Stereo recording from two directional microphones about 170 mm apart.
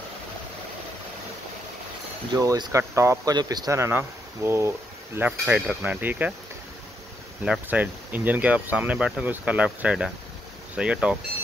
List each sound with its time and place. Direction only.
2.3 s speech: 20° right (ahead or behind)
7.4 s speech: 5° right (ahead or behind)